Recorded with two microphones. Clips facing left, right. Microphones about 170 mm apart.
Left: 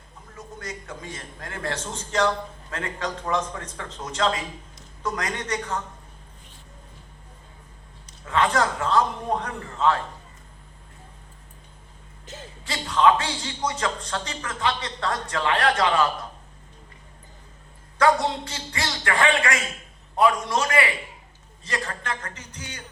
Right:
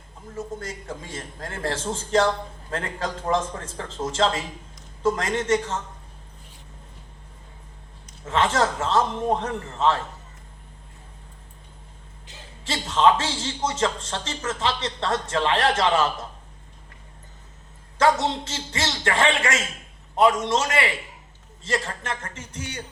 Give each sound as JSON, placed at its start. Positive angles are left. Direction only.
{"t": 0.3, "sound": "a man's voice", "side_deg": -30}
{"t": 8.2, "sound": "a man's voice", "side_deg": -25}
{"t": 12.6, "sound": "a man's voice", "side_deg": -25}
{"t": 17.9, "sound": "a man's voice", "side_deg": -25}